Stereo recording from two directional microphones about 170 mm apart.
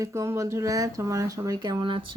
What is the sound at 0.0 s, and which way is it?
Speech, 15° right (ahead or behind).